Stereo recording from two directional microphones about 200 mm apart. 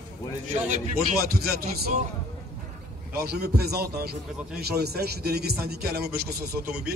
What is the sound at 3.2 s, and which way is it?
A man's voice, 55° right (ahead or behind).